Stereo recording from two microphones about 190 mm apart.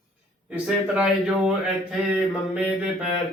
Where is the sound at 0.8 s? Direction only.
5° right (ahead or behind).